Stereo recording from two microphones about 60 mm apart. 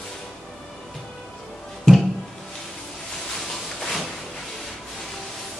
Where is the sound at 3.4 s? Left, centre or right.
Centre.